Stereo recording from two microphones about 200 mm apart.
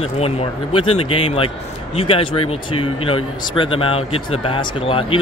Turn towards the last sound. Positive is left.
turn(degrees=30)  # may be behind; listen again after turning